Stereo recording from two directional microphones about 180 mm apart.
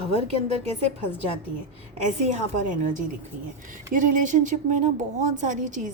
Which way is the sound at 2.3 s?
45° right (ahead or behind).